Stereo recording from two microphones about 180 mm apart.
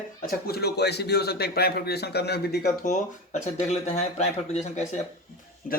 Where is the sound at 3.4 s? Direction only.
40° left (ahead or behind).